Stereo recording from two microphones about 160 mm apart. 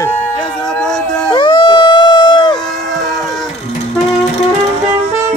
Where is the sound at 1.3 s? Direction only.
30° left (ahead or behind).